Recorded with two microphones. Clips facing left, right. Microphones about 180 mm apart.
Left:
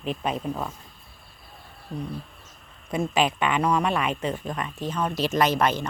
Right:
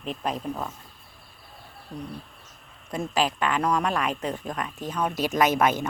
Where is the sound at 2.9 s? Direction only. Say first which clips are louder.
Left 2 dB; 10° left (ahead or behind).